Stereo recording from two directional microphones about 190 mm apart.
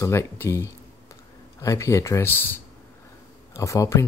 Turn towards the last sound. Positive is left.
turn(degrees=15)  # may be behind; listen again after turning